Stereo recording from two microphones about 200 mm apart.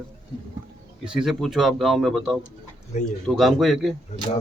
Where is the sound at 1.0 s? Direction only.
5° right (ahead or behind).